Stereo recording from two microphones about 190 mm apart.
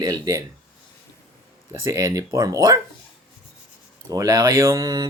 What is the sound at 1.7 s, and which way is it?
Speech, 15° right (ahead or behind).